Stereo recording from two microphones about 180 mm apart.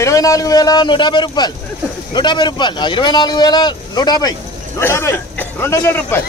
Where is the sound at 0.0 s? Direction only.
20° left (ahead or behind).